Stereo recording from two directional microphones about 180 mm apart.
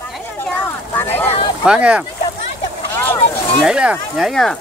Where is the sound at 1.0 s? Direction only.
10° left (ahead or behind).